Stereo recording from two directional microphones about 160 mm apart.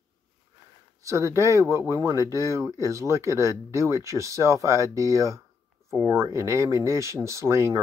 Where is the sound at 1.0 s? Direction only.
20° right (ahead or behind).